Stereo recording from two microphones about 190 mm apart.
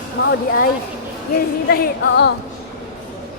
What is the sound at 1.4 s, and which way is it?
Speech, 60° left (ahead or behind).